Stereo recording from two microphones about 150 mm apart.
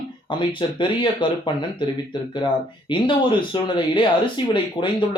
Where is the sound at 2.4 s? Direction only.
35° left (ahead or behind).